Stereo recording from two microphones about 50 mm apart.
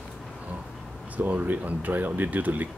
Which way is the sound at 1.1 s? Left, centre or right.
Right.